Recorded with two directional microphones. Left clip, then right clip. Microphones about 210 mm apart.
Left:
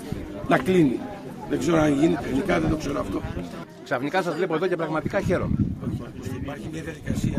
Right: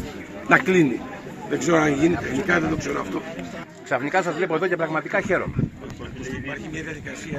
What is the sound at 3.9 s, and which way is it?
A man's voice, 5° left (ahead or behind).